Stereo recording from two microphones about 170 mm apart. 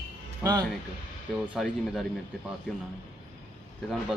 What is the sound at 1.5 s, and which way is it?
Speech, centre (ahead or behind).